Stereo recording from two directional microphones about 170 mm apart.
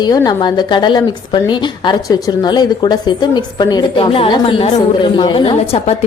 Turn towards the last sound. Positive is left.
turn(degrees=35)  # may be behind; listen again after turning